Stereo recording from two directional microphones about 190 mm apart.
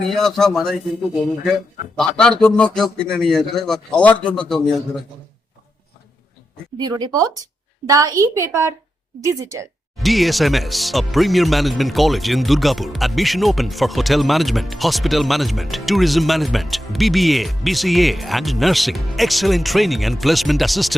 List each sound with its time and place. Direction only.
0.0 s speech: centre (ahead or behind)
6.7 s a woman's voice: 20° right (ahead or behind)
10.0 s speech: centre (ahead or behind)